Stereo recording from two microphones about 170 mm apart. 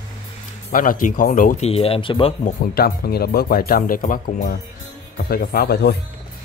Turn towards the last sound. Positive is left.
turn(degrees=70)  # may be behind; listen again after turning